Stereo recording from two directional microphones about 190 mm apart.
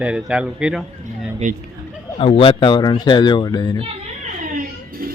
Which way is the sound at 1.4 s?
40° right (ahead or behind).